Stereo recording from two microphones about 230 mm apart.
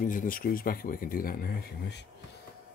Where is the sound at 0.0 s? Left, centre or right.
Left.